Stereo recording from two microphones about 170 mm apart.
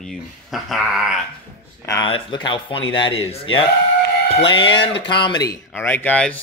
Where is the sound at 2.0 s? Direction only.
30° left (ahead or behind).